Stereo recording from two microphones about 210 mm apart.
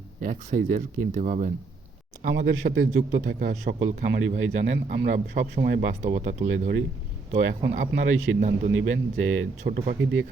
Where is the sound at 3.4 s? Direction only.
55° right (ahead or behind); by 4.5 s 70° right (ahead or behind).